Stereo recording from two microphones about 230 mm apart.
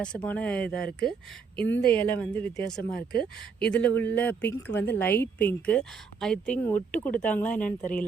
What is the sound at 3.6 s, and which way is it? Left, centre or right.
Speech, centre.